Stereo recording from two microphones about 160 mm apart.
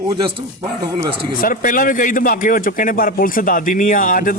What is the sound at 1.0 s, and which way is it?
Speech, 35° right (ahead or behind).